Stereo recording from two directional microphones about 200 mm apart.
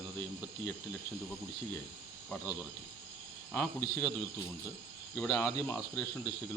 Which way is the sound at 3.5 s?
10° left (ahead or behind).